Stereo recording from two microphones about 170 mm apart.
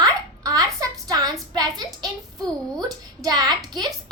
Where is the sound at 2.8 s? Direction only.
25° right (ahead or behind).